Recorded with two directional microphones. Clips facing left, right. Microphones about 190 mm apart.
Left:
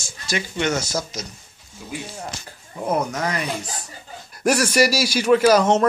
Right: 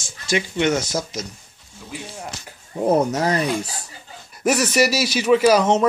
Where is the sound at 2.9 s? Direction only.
35° right (ahead or behind).